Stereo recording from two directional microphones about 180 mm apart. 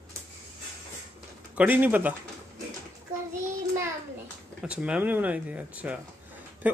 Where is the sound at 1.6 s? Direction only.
10° right (ahead or behind).